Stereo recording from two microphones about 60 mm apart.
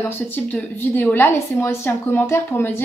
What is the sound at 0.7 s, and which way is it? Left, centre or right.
Speech, left.